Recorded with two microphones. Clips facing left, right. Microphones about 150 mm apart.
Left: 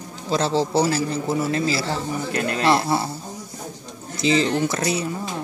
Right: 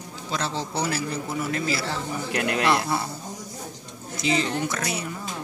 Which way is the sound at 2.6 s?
30° left (ahead or behind).